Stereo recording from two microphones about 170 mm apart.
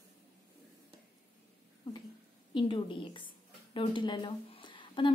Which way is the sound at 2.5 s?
30° left (ahead or behind).